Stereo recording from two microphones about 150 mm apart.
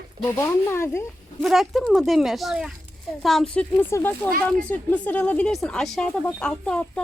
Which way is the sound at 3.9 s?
20° left (ahead or behind).